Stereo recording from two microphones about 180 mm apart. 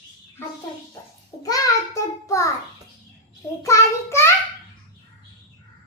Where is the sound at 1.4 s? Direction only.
20° left (ahead or behind).